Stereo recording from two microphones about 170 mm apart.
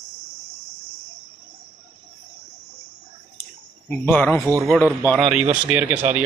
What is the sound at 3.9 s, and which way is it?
Cricket, 10° left (ahead or behind).